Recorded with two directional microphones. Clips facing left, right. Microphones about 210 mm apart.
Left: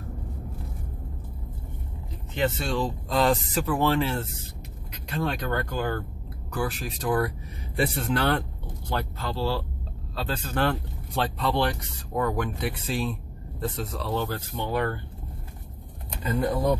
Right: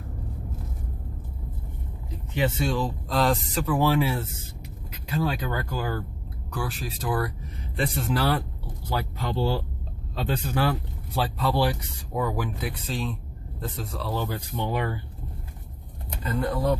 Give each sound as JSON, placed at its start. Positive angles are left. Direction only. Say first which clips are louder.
{"t": 2.3, "sound": "speech", "louder": "right 1 dB", "side_deg": -10}
{"t": 10.6, "sound": "speech", "louder": "even", "side_deg": -5}
{"t": 14.2, "sound": "speech", "louder": "right 1 dB", "side_deg": -15}
{"t": 16.3, "sound": "speech", "louder": "left 1 dB", "side_deg": 15}